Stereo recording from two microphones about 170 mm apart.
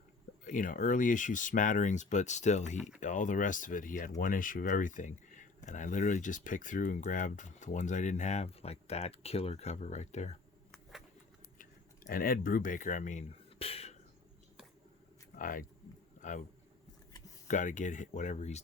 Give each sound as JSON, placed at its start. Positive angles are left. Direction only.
{"t": 0.4, "sound": "speech", "side_deg": 50}
{"t": 11.5, "sound": "speech", "side_deg": 55}
{"t": 15.4, "sound": "speech", "side_deg": 55}
{"t": 17.5, "sound": "speech", "side_deg": 45}